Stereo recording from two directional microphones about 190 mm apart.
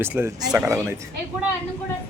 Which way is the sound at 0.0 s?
10° right (ahead or behind).